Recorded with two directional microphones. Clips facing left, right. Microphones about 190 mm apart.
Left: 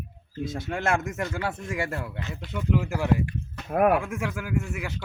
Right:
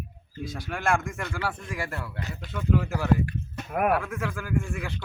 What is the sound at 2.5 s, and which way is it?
Speech, 15° left (ahead or behind).